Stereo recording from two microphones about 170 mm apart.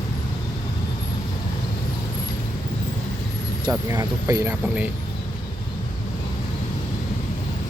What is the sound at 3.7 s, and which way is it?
Speech, 20° right (ahead or behind).